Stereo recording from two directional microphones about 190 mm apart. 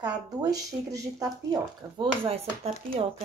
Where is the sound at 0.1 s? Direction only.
20° right (ahead or behind).